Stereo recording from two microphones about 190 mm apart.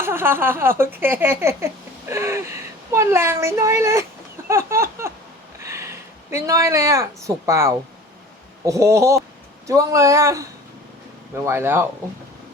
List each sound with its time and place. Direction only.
0.0 s speech: 10° right (ahead or behind)
4.4 s a sound: 15° right (ahead or behind)
5.6 s speech: 15° right (ahead or behind)
11.4 s speech: 10° right (ahead or behind)